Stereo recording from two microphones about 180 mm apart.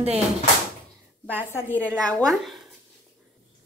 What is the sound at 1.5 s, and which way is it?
Speech, 10° left (ahead or behind).